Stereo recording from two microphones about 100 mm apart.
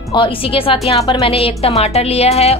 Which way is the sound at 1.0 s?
75° left (ahead or behind).